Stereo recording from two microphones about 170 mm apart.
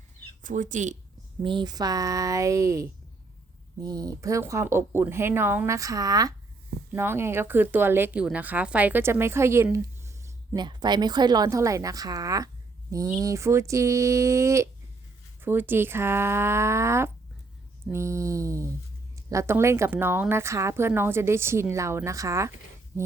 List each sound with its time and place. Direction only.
0.4 s speech: 50° right (ahead or behind)
1.4 s a woman's voice: 25° right (ahead or behind)
3.8 s a woman's voice: 20° right (ahead or behind)